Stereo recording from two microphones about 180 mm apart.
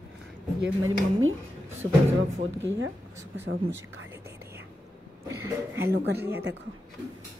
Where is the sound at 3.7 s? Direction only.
90° right.